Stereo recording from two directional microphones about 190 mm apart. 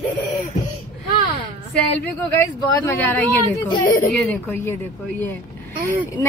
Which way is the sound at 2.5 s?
15° left (ahead or behind).